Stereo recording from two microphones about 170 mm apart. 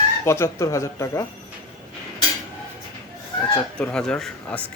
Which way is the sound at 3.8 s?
5° left (ahead or behind).